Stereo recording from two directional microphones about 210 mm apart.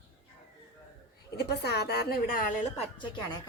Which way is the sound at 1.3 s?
50° left (ahead or behind).